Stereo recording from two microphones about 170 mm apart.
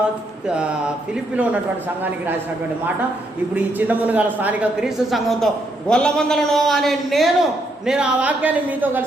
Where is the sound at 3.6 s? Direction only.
10° right (ahead or behind).